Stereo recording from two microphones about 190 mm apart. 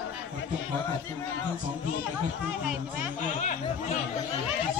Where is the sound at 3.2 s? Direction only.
40° left (ahead or behind).